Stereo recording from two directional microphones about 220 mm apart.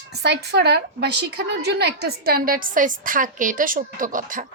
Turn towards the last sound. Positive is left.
turn(degrees=-35)  # may be behind; listen again after turning